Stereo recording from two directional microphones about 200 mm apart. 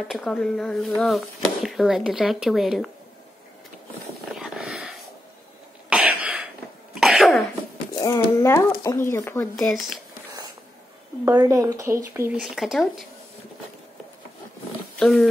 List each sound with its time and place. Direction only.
0.1 s speech: 5° left (ahead or behind)
4.4 s a sound: 5° right (ahead or behind)
5.9 s cough: 5° right (ahead or behind)
8.0 s speech: 15° left (ahead or behind)
11.2 s speech: 15° right (ahead or behind)
12.4 s speech: centre (ahead or behind)
15.0 s speech: centre (ahead or behind)